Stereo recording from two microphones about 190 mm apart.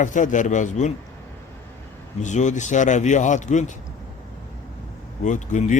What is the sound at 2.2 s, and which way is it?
Speech, 40° left (ahead or behind).